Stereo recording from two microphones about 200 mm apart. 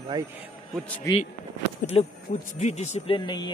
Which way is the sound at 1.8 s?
30° left (ahead or behind).